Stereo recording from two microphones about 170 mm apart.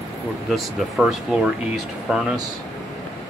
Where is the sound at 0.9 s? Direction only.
Centre (ahead or behind).